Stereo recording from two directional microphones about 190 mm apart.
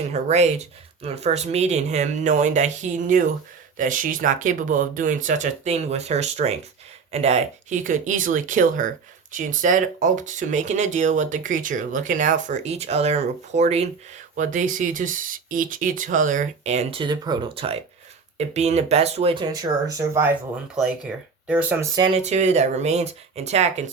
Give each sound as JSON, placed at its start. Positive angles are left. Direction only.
{"t": 0.1, "sound": "speech", "side_deg": -35}
{"t": 20.7, "sound": "speech", "side_deg": -5}
{"t": 21.9, "sound": "speech", "side_deg": -30}